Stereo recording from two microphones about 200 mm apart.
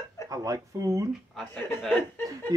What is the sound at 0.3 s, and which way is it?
Speech, 15° right (ahead or behind).